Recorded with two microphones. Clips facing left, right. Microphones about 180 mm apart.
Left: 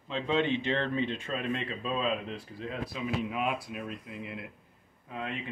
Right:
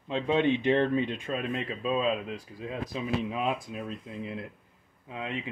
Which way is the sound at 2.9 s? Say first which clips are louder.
Right 2 dB; 25° right (ahead or behind).